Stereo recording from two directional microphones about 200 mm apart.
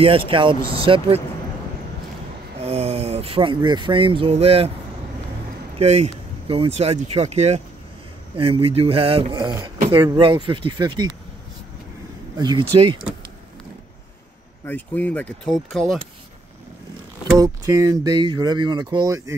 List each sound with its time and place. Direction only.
0.0 s speech: 25° right (ahead or behind)
2.6 s speech: 30° right (ahead or behind)
5.8 s speech: 35° right (ahead or behind)
12.4 s speech: 20° right (ahead or behind)
14.7 s speech: 10° left (ahead or behind)
17.4 s speech: 15° right (ahead or behind)